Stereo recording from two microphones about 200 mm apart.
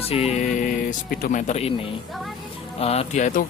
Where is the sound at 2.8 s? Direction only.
30° left (ahead or behind).